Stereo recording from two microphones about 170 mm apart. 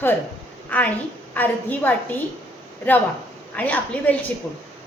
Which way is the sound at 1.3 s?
10° left (ahead or behind).